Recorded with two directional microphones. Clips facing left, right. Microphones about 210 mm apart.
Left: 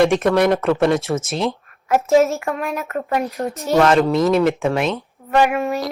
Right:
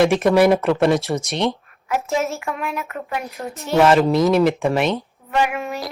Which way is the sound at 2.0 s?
40° left (ahead or behind).